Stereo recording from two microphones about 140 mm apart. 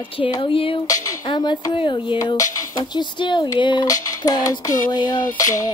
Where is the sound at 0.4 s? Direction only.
40° left (ahead or behind).